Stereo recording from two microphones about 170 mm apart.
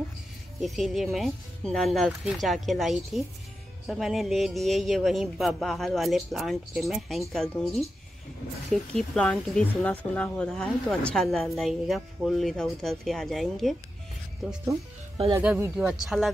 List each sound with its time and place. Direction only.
0.6 s speech: centre (ahead or behind)
8.9 s speech: 5° left (ahead or behind)